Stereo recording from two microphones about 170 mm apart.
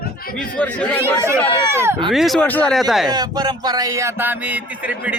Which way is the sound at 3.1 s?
25° right (ahead or behind).